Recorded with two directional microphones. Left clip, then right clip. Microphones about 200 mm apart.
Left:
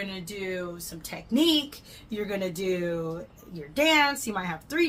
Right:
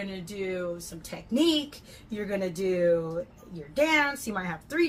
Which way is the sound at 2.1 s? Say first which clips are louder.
Even; 20° left (ahead or behind).